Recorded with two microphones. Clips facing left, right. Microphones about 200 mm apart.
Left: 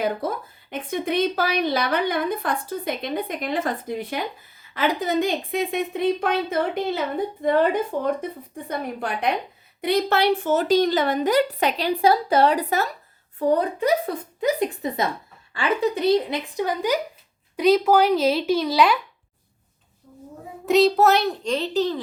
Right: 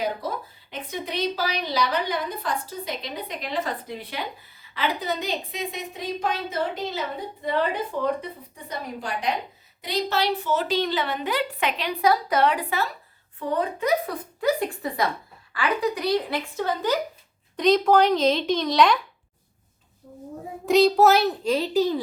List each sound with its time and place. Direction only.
0.2 s a sound: 50° left (ahead or behind)
0.7 s a woman's voice: 50° left (ahead or behind); by 14.2 s 35° left (ahead or behind)
14.4 s a woman's voice: 20° left (ahead or behind)
20.7 s a child's voice: centre (ahead or behind)